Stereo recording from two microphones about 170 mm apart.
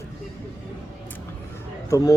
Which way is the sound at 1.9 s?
20° left (ahead or behind).